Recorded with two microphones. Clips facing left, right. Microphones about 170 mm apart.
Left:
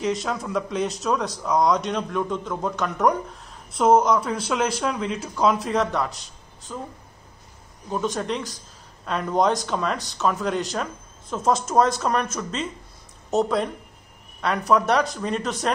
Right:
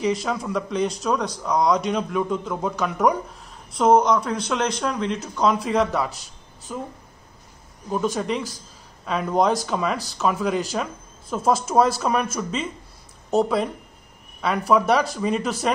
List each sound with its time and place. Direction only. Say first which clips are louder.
0.0 s speech: right 2 dB; centre (ahead or behind)
7.9 s speech: right 2 dB; 5° right (ahead or behind)
14.7 s speech: right 1 dB; 5° right (ahead or behind)